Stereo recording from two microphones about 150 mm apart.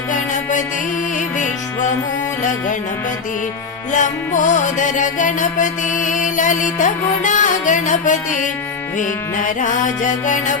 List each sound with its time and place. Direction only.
3.9 s music: 55° left (ahead or behind)